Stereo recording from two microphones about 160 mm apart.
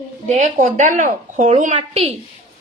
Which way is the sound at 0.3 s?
50° right (ahead or behind).